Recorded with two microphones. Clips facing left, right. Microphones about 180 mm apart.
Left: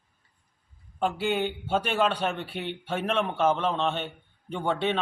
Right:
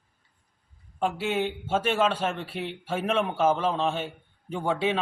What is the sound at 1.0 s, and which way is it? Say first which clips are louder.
Speech: even; centre (ahead or behind).